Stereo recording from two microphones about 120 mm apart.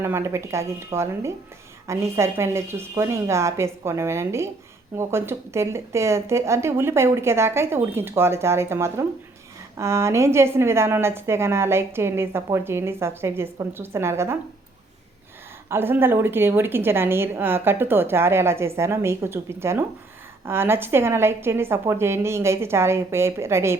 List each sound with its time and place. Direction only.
0.0 s a woman's voice: 20° right (ahead or behind)
15.7 s a woman's voice: 20° right (ahead or behind)